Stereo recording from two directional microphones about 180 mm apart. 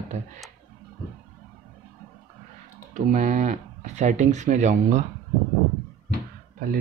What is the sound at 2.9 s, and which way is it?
Speech, 40° right (ahead or behind).